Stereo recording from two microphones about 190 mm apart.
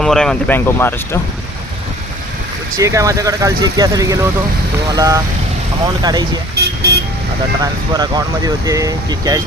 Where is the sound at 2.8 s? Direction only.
15° right (ahead or behind).